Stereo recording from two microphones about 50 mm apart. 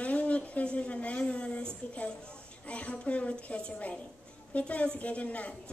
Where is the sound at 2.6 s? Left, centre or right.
Left.